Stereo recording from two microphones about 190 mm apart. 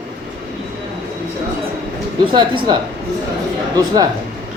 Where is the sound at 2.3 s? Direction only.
25° right (ahead or behind).